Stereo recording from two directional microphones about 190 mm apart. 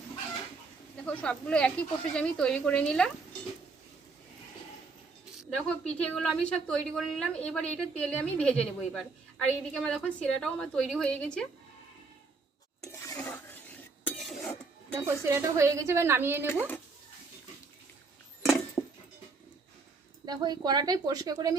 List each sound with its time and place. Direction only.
1.0 s a woman's voice: 5° left (ahead or behind)
5.4 s a woman's voice: 5° left (ahead or behind)
12.9 s stir: 15° left (ahead or behind)
14.9 s a woman's voice: 15° right (ahead or behind)
18.8 s a sound: 10° left (ahead or behind)
20.2 s a woman's voice: 20° right (ahead or behind)